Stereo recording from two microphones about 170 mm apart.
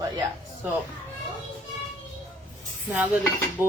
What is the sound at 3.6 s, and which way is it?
Hammer, 15° right (ahead or behind).